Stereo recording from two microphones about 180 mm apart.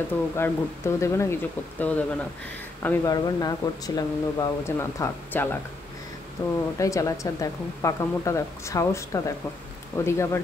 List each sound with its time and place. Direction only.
0.4 s speech: 15° left (ahead or behind)
3.1 s speech: 20° left (ahead or behind)